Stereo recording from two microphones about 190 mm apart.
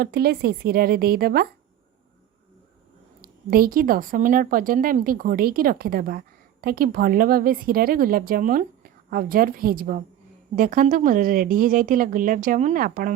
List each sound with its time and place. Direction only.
0.0 s speech: 55° right (ahead or behind)
3.2 s speech: 50° right (ahead or behind)